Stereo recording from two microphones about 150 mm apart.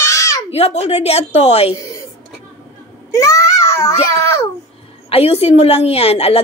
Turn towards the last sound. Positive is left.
turn(degrees=45)  # may be behind; listen again after turning